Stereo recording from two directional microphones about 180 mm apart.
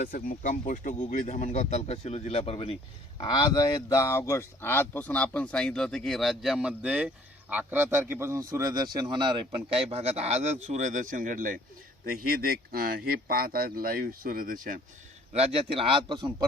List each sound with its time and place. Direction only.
0.0 s a man's voice: 50° left (ahead or behind); by 14.8 s 50° right (ahead or behind)
15.3 s speech: 35° right (ahead or behind)